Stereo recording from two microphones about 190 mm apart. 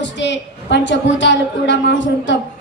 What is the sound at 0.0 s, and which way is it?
A woman's voice, 70° left (ahead or behind).